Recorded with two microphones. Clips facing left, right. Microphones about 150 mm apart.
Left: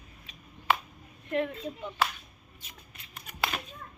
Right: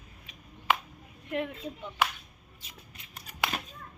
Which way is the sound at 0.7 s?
15° right (ahead or behind).